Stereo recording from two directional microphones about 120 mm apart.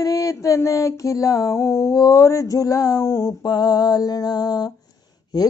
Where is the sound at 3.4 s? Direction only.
35° left (ahead or behind).